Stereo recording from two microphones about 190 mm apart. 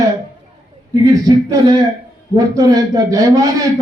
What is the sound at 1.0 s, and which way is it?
A man's voice, 20° right (ahead or behind).